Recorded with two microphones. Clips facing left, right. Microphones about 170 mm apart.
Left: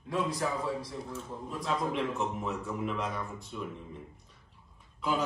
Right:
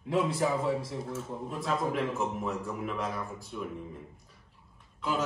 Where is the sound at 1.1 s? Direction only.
5° right (ahead or behind).